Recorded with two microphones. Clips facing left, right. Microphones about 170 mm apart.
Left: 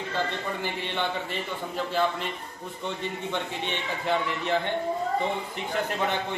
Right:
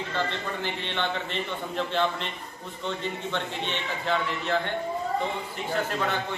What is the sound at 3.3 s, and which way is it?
A man's voice, 15° left (ahead or behind).